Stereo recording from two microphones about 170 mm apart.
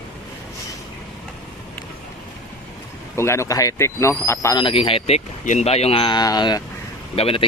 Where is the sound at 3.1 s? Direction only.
15° left (ahead or behind).